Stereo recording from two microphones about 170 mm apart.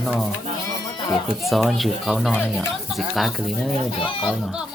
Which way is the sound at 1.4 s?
Centre (ahead or behind).